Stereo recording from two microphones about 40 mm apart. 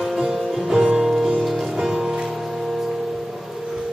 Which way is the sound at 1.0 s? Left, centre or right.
Centre.